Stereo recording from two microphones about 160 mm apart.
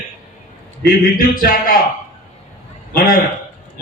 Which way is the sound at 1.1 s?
60° left (ahead or behind).